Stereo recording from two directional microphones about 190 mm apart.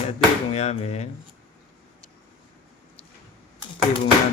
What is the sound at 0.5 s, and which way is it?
Speech, 35° left (ahead or behind).